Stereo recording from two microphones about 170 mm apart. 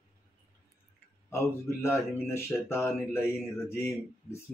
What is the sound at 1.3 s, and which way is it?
Speech, 15° left (ahead or behind).